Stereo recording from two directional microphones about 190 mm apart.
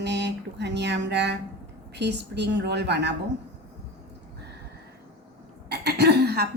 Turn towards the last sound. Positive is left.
turn(degrees=-60)  # may be behind; listen again after turning